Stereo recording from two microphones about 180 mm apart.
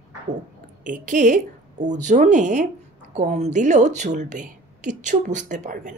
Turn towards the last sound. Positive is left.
turn(degrees=-45)  # may be behind; listen again after turning